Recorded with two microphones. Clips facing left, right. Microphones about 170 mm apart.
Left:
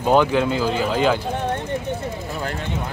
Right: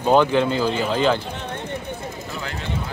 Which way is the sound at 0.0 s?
10° left (ahead or behind).